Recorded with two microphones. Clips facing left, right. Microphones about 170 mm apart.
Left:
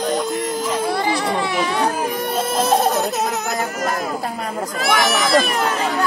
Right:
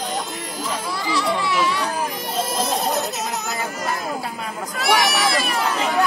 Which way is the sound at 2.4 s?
55° left (ahead or behind).